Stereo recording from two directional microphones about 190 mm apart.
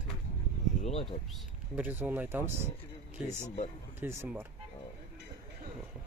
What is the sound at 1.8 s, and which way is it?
Speech, 10° right (ahead or behind).